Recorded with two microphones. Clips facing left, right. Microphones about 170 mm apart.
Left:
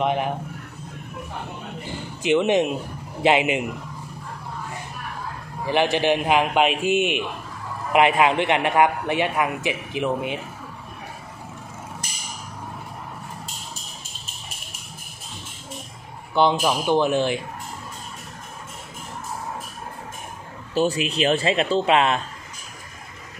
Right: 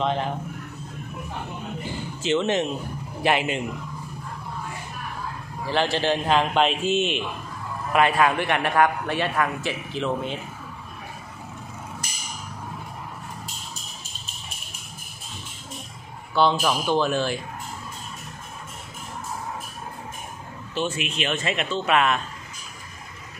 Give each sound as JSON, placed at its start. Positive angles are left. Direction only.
{"t": 0.0, "sound": "a man's voice", "side_deg": 15}
{"t": 2.2, "sound": "a man's voice", "side_deg": 15}
{"t": 5.7, "sound": "a man's voice", "side_deg": 15}
{"t": 16.3, "sound": "a man's voice", "side_deg": 15}
{"t": 20.7, "sound": "speech", "side_deg": 35}